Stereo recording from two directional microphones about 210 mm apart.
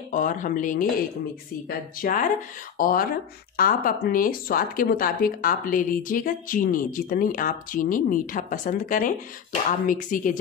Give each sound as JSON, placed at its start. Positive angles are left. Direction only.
{"t": 0.1, "sound": "speech", "side_deg": 40}